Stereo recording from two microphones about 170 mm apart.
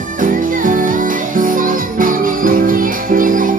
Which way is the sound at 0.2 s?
50° right (ahead or behind).